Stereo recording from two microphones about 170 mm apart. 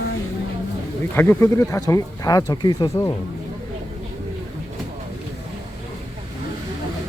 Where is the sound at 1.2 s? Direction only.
15° left (ahead or behind).